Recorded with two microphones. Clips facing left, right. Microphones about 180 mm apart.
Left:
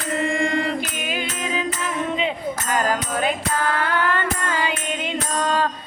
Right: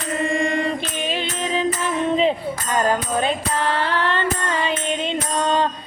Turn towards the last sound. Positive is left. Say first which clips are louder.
# right 2 dB
turn(degrees=-20)  # may be behind; listen again after turning